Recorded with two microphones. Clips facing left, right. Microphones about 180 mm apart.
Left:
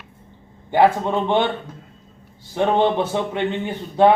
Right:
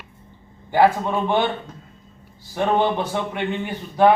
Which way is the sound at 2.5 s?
20° left (ahead or behind).